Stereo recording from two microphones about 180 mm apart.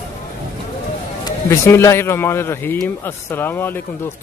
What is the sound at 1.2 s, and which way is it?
Speech, 15° left (ahead or behind).